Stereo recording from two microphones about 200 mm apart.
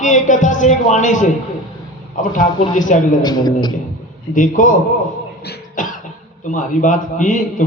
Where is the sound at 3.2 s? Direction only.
20° left (ahead or behind).